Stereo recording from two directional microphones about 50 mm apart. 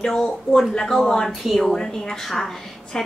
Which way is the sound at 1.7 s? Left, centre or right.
Centre.